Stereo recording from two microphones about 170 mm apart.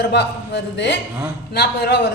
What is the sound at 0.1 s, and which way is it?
Speech, 90° left.